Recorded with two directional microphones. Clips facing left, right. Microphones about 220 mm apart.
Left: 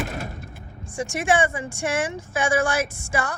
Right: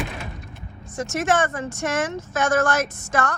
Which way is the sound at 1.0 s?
10° left (ahead or behind).